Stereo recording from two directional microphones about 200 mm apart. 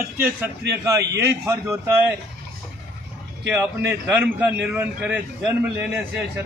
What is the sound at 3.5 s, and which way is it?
A man's voice, 10° right (ahead or behind).